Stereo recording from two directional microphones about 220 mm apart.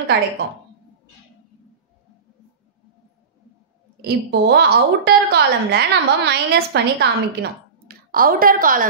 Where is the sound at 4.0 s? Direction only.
50° right (ahead or behind).